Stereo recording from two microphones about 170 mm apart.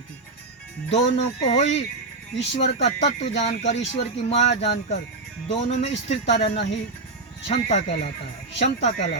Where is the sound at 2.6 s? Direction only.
40° left (ahead or behind).